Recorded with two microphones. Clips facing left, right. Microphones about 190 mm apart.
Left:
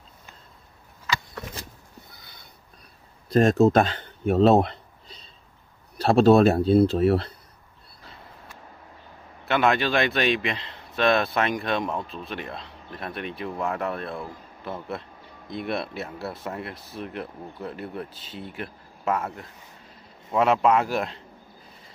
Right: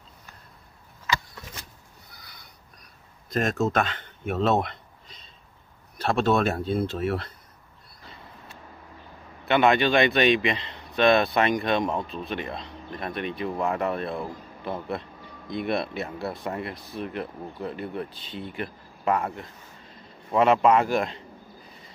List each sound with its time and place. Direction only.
2.1 s a sound: 25° left (ahead or behind)
3.3 s a man's voice: 35° left (ahead or behind)
9.5 s speech: centre (ahead or behind)